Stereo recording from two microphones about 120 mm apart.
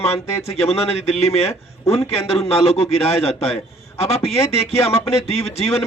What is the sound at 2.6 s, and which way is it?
A man's voice, 60° left (ahead or behind).